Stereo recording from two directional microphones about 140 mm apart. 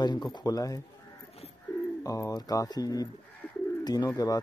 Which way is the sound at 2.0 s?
25° left (ahead or behind).